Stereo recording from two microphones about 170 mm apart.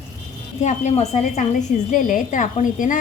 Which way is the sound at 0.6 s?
45° left (ahead or behind).